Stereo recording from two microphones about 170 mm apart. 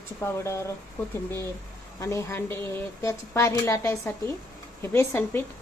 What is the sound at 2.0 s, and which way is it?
A woman's voice, 15° left (ahead or behind).